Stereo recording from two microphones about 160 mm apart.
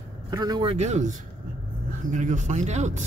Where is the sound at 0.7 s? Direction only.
45° right (ahead or behind).